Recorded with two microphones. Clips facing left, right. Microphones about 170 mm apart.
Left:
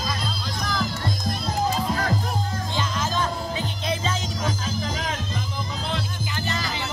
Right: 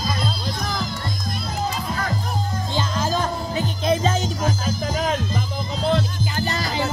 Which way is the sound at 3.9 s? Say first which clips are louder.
Right 8 dB; 45° right (ahead or behind).